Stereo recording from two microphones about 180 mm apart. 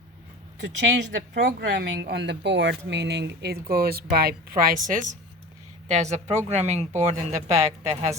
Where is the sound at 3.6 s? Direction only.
55° right (ahead or behind); by 7.1 s 35° right (ahead or behind).